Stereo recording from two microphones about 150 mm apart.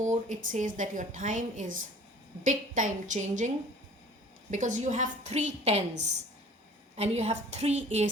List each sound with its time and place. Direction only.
0.0 s a woman's voice: 55° right (ahead or behind)
4.5 s a woman's voice: 55° right (ahead or behind)